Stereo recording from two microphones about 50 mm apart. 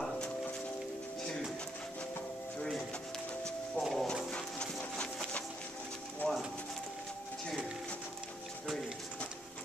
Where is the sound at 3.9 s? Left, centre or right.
Centre.